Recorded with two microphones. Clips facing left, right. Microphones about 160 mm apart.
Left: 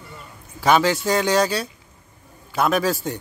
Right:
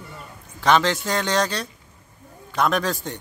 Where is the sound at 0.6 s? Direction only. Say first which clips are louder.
Left 1 dB; 10° left (ahead or behind).